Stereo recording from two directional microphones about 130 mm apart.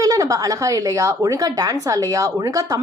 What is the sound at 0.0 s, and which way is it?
Speech, 25° right (ahead or behind).